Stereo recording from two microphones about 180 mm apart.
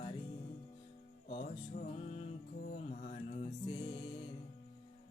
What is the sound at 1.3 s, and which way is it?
Music, 45° left (ahead or behind).